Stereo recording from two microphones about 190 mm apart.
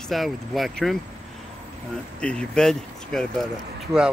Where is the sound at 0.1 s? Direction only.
Centre (ahead or behind).